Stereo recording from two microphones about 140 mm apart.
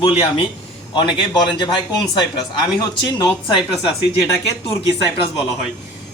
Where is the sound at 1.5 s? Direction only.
35° left (ahead or behind).